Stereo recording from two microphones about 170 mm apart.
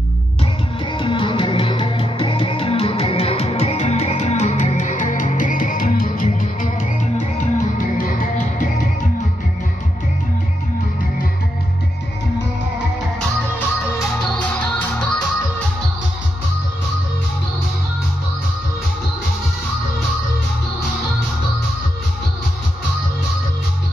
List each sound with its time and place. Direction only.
0.4 s music: 30° left (ahead or behind); by 8.6 s 55° left (ahead or behind)
14.4 s music: 10° left (ahead or behind)